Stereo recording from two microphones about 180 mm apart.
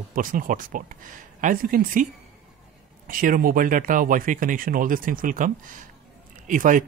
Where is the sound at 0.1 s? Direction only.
50° right (ahead or behind).